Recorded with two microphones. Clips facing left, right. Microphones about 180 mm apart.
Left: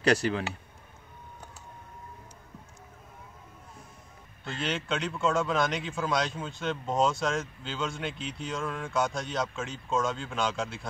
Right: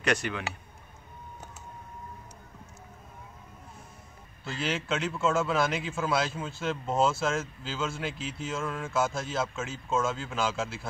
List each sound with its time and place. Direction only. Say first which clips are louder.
0.0 s speech: left 4 dB; 35° left (ahead or behind)
4.5 s a man's voice: right 1 dB; 5° right (ahead or behind)